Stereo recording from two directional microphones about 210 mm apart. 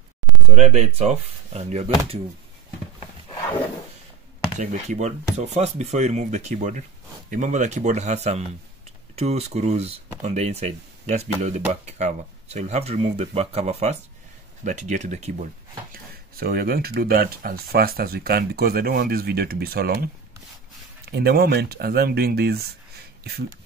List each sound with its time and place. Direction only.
0.5 s speech: 35° right (ahead or behind)
4.6 s speech: 35° right (ahead or behind)
15.9 s speech: 45° right (ahead or behind)
21.1 s speech: 50° right (ahead or behind)